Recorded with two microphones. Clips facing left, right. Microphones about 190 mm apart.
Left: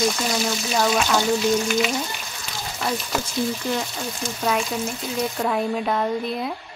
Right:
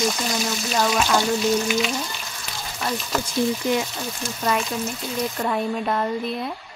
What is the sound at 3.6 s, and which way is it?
Speech, 20° right (ahead or behind).